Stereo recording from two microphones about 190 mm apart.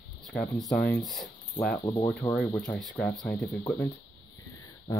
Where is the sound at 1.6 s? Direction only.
20° left (ahead or behind).